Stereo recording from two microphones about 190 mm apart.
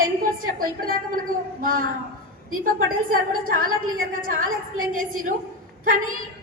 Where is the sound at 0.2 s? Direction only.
50° right (ahead or behind).